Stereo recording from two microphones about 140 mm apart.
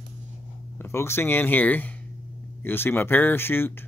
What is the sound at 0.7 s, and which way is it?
Speech, 20° left (ahead or behind).